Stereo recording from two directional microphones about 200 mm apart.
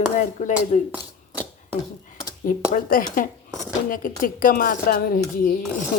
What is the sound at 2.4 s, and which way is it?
Speech, 45° left (ahead or behind).